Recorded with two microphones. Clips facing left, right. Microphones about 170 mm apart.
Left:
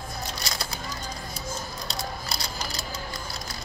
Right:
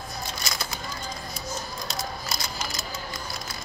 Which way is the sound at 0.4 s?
35° left (ahead or behind).